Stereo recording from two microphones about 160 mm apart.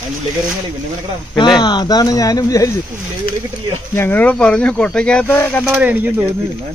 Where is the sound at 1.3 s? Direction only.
25° left (ahead or behind).